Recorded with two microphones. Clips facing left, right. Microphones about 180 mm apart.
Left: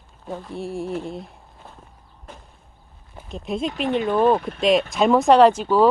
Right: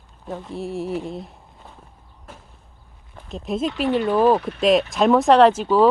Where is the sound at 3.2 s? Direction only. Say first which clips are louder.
Right 2 dB; centre (ahead or behind).